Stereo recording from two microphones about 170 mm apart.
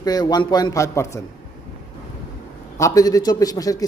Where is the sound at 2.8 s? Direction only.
20° left (ahead or behind).